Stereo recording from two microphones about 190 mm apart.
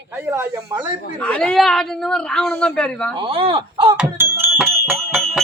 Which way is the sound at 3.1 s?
30° right (ahead or behind).